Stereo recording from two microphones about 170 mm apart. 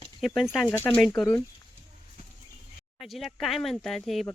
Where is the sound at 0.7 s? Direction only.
10° left (ahead or behind).